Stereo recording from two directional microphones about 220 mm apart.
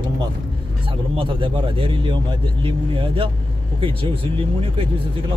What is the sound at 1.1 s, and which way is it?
Speech, 25° right (ahead or behind).